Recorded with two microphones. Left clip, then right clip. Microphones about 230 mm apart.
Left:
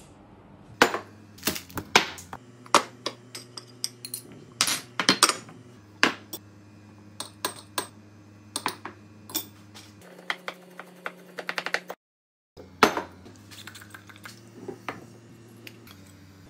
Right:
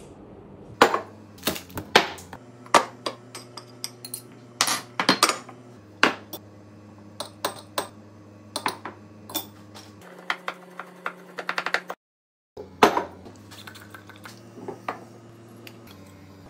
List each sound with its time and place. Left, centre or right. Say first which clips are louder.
0.7 s typewriter: right 3 dB; centre
3.3 s a sound: right 1 dB; centre
5.9 s finger snapping: right 2 dB; centre
7.2 s computer keyboard: right 3 dB; centre
8.5 s a sound: right 3 dB; centre
13.6 s typing: even; centre